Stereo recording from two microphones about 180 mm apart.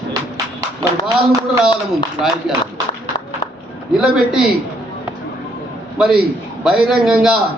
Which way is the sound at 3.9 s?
5° right (ahead or behind).